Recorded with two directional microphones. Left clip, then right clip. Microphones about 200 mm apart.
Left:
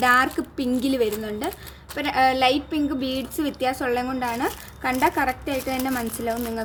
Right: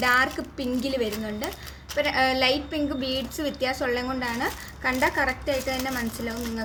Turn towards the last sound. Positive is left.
turn(degrees=45)  # may be behind; listen again after turning